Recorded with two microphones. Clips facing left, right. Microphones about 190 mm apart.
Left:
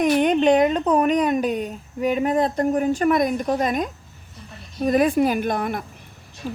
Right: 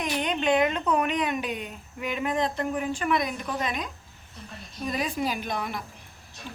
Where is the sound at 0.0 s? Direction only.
50° left (ahead or behind).